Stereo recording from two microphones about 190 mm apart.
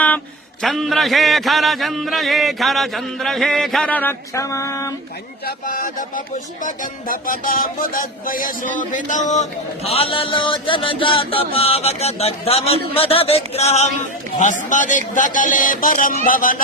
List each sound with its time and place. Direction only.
0.6 s music: centre (ahead or behind); by 4.9 s 15° left (ahead or behind)
5.5 s music: 45° left (ahead or behind)
14.3 s speech: 40° left (ahead or behind)